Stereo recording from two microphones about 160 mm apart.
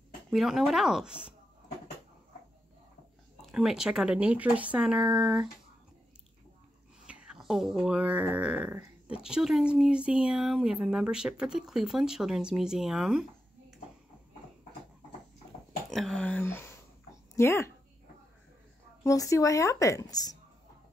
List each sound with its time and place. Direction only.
0.3 s speech: centre (ahead or behind)
3.5 s speech: 5° right (ahead or behind)
7.1 s speech: 5° right (ahead or behind)
15.9 s a sound: centre (ahead or behind)
19.0 s speech: 20° left (ahead or behind)